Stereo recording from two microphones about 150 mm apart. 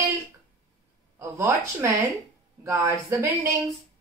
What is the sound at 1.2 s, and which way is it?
Speech, 20° right (ahead or behind).